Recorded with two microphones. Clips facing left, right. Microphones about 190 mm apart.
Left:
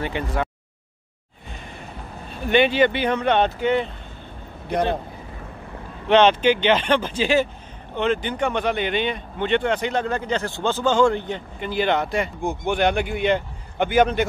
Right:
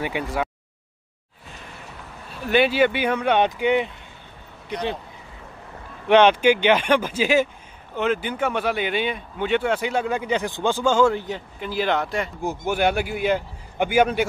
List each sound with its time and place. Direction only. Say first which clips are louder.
0.0 s speech: even; 10° right (ahead or behind)
2.4 s speech: left 1 dB; 5° right (ahead or behind)
4.6 s speech: left 5 dB; 55° left (ahead or behind)
6.0 s speech: right 1 dB; 10° right (ahead or behind)